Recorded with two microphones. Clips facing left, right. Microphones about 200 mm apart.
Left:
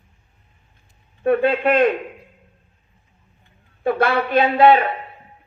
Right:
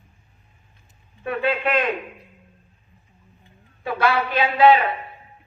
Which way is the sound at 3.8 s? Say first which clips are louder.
Left 3 dB; 60° left (ahead or behind).